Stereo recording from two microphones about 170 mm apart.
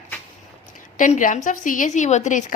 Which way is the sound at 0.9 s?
50° left (ahead or behind).